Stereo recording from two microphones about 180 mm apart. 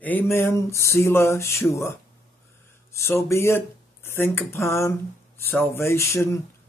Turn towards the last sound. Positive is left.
turn(degrees=15)  # may be behind; listen again after turning